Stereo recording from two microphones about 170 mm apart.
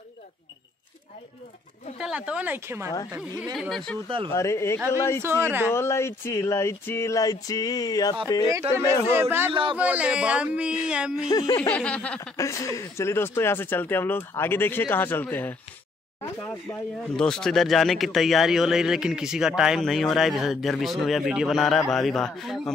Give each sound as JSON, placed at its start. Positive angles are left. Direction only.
{"t": 2.0, "sound": "speech", "side_deg": -5}
{"t": 4.3, "sound": "a man's voice", "side_deg": 15}
{"t": 5.4, "sound": "speech", "side_deg": -10}
{"t": 5.7, "sound": "a man's voice", "side_deg": 15}
{"t": 9.1, "sound": "speech", "side_deg": -15}
{"t": 9.5, "sound": "a man's voice", "side_deg": -30}
{"t": 9.8, "sound": "speech", "side_deg": -10}
{"t": 11.3, "sound": "a sound", "side_deg": 20}
{"t": 11.7, "sound": "speech", "side_deg": 5}
{"t": 12.4, "sound": "a man's voice", "side_deg": 20}